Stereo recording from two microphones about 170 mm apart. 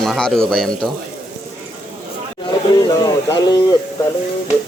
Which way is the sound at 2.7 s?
25° left (ahead or behind).